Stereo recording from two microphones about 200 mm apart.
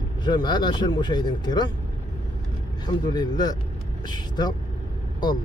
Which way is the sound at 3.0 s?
20° left (ahead or behind).